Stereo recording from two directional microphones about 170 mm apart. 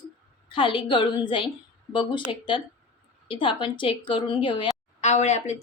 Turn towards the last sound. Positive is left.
turn(degrees=40)  # may be behind; listen again after turning